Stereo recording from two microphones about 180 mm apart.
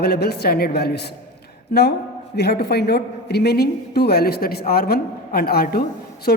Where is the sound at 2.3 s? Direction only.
65° left (ahead or behind).